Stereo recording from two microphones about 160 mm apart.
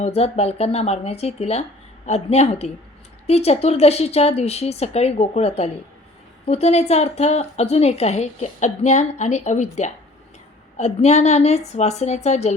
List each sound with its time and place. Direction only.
0.0 s a woman's voice: 40° left (ahead or behind)